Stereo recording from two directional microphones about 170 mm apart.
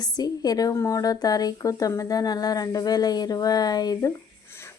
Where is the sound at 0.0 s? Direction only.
20° left (ahead or behind).